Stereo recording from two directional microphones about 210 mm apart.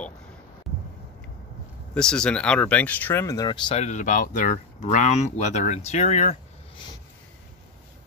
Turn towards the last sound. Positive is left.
turn(degrees=30)  # may be behind; listen again after turning